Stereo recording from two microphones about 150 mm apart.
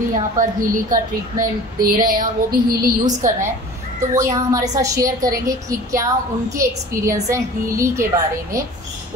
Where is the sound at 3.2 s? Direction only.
60° right (ahead or behind).